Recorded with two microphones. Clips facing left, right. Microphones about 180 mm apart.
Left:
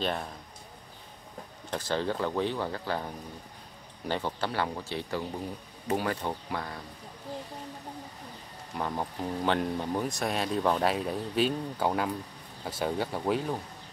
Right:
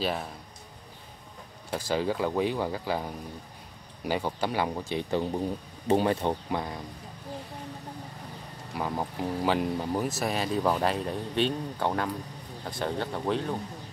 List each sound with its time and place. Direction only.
0.0 s speech: centre (ahead or behind)
1.7 s speech: 10° right (ahead or behind)
8.7 s speech: 5° right (ahead or behind)